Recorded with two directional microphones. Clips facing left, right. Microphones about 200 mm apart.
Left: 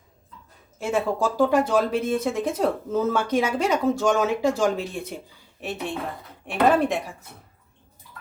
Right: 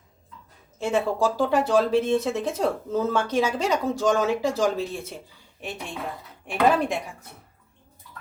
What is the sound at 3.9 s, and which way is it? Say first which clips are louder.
Speech: left 4 dB; 20° left (ahead or behind).